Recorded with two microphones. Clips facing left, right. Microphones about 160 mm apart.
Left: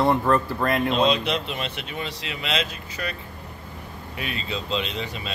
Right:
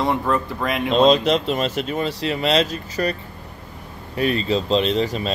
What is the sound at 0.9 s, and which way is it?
Speech, 35° right (ahead or behind).